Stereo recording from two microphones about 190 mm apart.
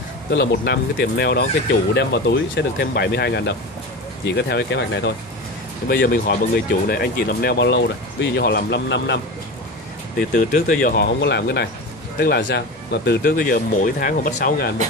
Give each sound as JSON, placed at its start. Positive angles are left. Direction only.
{"t": 0.3, "sound": "speech", "side_deg": 60}
{"t": 5.9, "sound": "speech", "side_deg": 50}
{"t": 10.1, "sound": "speech", "side_deg": 45}
{"t": 11.0, "sound": "speech", "side_deg": 65}